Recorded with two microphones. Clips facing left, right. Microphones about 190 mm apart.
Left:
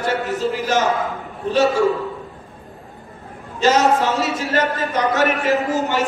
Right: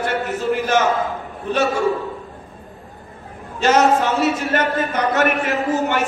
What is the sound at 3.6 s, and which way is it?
Speech, 60° right (ahead or behind).